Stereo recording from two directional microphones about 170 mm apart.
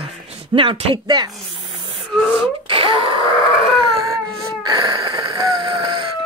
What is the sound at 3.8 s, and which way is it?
Dog, 20° right (ahead or behind).